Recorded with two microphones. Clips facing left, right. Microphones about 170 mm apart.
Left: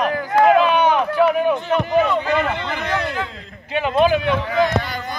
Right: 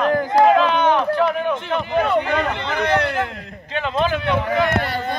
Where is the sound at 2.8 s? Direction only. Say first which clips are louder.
Right 4 dB; 70° right (ahead or behind).